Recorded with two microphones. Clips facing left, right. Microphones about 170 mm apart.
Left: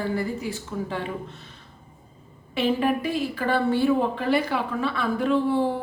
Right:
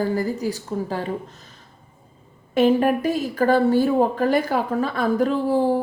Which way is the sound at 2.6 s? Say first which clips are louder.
Right 6 dB; 45° right (ahead or behind).